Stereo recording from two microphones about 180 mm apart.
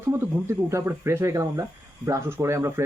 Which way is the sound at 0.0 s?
15° right (ahead or behind).